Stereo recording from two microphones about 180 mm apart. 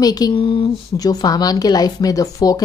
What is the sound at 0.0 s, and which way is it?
A woman's voice, 20° left (ahead or behind).